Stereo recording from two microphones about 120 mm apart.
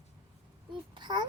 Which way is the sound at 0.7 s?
40° right (ahead or behind).